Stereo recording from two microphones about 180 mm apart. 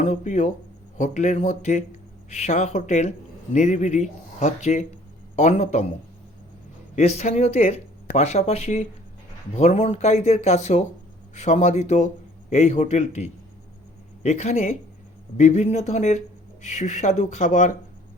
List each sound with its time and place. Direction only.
0.0 s speech: 40° left (ahead or behind)
6.9 s speech: 40° left (ahead or behind)